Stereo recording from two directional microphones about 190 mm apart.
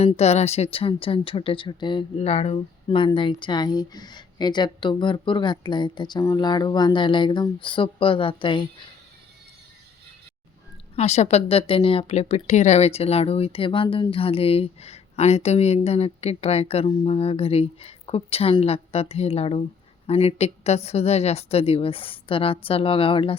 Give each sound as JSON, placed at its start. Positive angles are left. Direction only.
{"t": 0.0, "sound": "a woman's voice", "side_deg": 35}
{"t": 10.9, "sound": "a woman's voice", "side_deg": 35}